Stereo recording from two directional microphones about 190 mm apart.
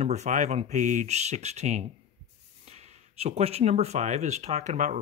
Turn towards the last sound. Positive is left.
turn(degrees=-40)  # may be behind; listen again after turning